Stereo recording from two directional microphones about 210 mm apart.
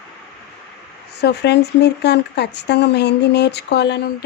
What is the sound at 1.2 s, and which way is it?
Speech, 55° left (ahead or behind).